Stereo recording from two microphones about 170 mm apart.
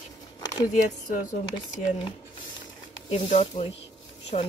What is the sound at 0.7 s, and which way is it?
Speech, 50° left (ahead or behind).